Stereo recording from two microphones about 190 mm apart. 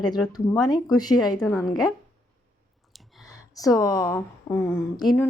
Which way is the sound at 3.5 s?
20° left (ahead or behind).